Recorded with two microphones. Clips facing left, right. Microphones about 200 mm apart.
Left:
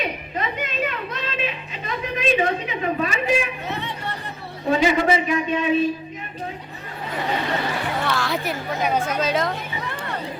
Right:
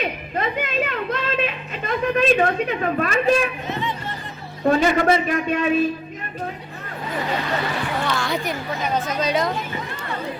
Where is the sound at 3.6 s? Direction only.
70° left (ahead or behind).